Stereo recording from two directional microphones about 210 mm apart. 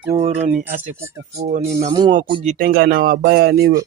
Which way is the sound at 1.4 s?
30° right (ahead or behind).